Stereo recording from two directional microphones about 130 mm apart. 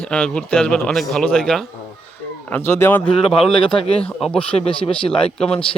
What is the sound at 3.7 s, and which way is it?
Speech, 45° left (ahead or behind).